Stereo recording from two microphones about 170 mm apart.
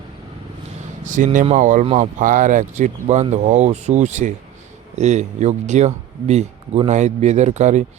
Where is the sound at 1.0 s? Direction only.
50° right (ahead or behind).